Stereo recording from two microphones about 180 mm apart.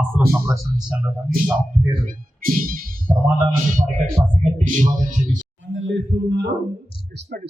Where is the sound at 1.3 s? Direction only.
50° right (ahead or behind).